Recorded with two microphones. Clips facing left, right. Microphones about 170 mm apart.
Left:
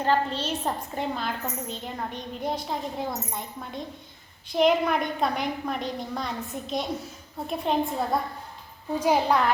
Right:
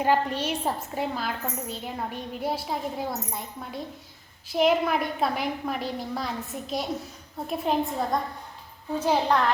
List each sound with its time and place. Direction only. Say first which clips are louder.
0.0 s a woman's voice: right 1 dB; 10° right (ahead or behind)
9.0 s a child's voice: left 1 dB; 10° left (ahead or behind)